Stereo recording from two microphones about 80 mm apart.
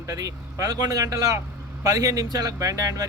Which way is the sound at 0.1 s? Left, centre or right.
Right.